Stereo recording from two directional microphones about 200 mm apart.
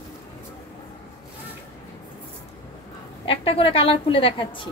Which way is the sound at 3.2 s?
25° left (ahead or behind).